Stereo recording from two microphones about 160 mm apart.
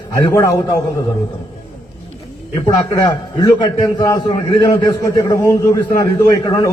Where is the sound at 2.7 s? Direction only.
25° left (ahead or behind).